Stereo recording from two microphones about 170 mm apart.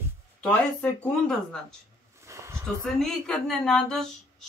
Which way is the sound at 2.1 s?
15° right (ahead or behind).